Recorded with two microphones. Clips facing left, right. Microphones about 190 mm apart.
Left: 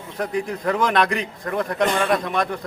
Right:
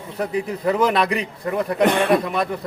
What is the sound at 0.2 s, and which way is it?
A man's voice, 5° right (ahead or behind).